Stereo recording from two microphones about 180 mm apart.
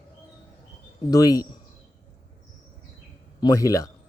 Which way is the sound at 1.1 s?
20° left (ahead or behind).